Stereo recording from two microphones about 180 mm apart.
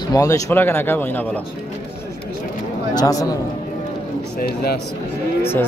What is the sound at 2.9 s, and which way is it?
Speech, 20° left (ahead or behind).